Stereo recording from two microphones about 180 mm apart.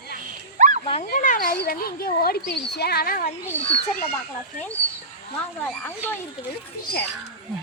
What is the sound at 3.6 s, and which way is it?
Speech, 35° left (ahead or behind).